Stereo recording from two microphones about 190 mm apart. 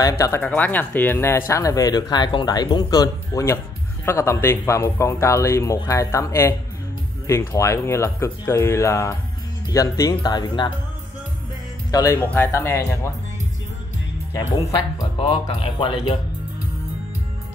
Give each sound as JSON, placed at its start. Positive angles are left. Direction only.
{"t": 0.0, "sound": "speech", "side_deg": 15}
{"t": 11.9, "sound": "speech", "side_deg": 15}
{"t": 15.0, "sound": "speech", "side_deg": 25}